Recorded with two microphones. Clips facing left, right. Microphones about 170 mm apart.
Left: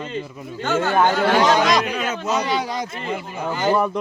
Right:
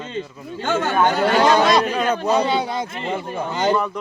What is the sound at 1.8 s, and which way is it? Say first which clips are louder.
Speech: right 4 dB; 40° right (ahead or behind).